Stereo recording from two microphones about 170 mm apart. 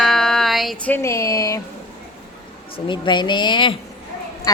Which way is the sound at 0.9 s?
15° left (ahead or behind).